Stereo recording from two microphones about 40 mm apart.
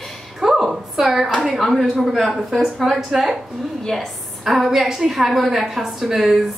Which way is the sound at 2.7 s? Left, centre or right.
Centre.